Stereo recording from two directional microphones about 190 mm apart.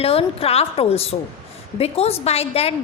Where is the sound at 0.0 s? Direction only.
30° left (ahead or behind).